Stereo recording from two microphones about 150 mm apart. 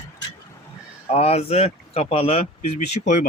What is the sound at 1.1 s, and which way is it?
Speech, 45° left (ahead or behind).